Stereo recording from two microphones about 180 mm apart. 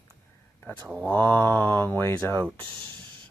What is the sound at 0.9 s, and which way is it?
Speech, 10° left (ahead or behind).